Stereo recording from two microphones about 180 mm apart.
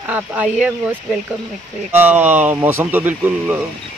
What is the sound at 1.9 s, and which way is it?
Speech, 10° right (ahead or behind).